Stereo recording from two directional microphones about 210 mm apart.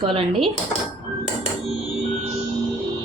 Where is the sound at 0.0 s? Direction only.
25° right (ahead or behind).